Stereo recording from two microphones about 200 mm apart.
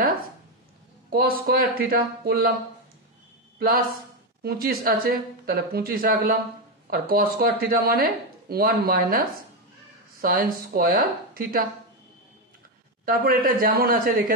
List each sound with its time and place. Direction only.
1.1 s speech: 50° right (ahead or behind)
3.5 s a woman's voice: 45° right (ahead or behind)
13.0 s speech: 45° right (ahead or behind)